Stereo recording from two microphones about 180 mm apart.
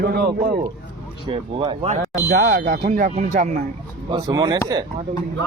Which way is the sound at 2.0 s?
50° right (ahead or behind).